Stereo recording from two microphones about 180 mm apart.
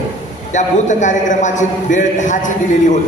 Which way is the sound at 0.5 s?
40° left (ahead or behind).